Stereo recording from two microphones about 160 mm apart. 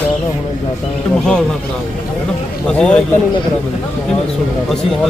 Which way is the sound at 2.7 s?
5° left (ahead or behind).